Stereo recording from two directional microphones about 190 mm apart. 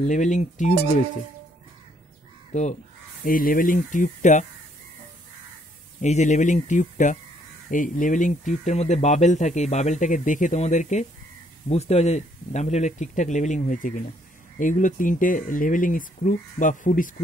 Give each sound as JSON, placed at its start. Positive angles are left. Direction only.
{"t": 0.0, "sound": "speech", "side_deg": 40}
{"t": 2.5, "sound": "speech", "side_deg": 35}
{"t": 3.3, "sound": "speech", "side_deg": 50}
{"t": 5.9, "sound": "speech", "side_deg": 40}